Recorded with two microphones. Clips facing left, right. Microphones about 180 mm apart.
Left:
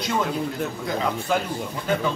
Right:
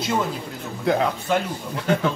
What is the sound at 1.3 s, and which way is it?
Speech, centre (ahead or behind).